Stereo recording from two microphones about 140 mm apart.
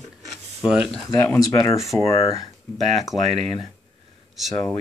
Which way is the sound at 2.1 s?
40° left (ahead or behind).